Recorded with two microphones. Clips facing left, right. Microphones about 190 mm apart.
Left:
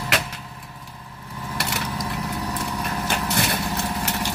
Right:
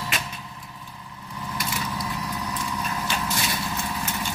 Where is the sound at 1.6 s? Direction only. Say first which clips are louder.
Left 3 dB; 70° left (ahead or behind).